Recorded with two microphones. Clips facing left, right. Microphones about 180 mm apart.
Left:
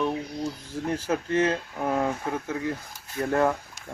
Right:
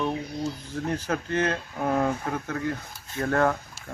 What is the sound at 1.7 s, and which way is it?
Speech, 5° left (ahead or behind).